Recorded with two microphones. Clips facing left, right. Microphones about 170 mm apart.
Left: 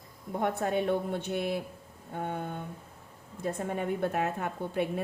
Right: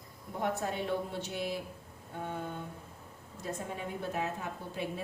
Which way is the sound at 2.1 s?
55° left (ahead or behind).